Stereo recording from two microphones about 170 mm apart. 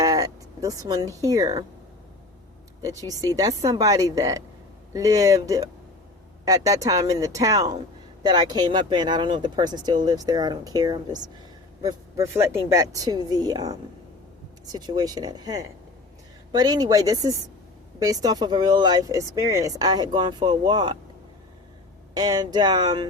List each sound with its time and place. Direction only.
0.0 s a sound: 20° right (ahead or behind)
2.8 s speech: 20° right (ahead or behind)
22.1 s speech: 25° right (ahead or behind)